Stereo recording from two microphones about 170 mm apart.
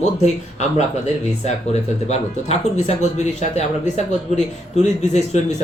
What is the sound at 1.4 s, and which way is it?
Speech, 40° left (ahead or behind).